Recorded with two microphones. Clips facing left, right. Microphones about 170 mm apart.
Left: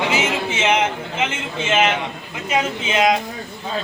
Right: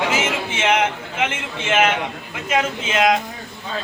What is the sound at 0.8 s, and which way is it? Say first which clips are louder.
Speech: even; 10° right (ahead or behind).